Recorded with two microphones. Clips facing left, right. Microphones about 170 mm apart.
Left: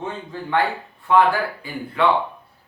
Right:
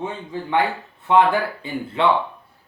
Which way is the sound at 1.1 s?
25° right (ahead or behind).